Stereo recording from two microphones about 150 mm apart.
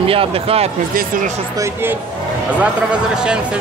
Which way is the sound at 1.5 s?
20° right (ahead or behind).